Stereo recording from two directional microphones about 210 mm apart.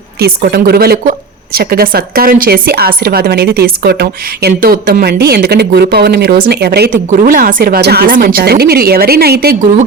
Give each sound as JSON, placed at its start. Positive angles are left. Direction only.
{"t": 0.2, "sound": "a woman's voice", "side_deg": -50}